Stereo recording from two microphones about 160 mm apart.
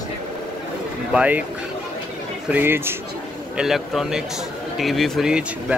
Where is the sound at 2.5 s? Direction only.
15° right (ahead or behind).